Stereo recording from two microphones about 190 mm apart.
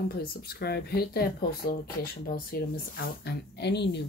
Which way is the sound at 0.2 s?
55° left (ahead or behind).